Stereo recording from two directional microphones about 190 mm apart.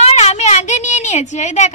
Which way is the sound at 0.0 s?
35° left (ahead or behind).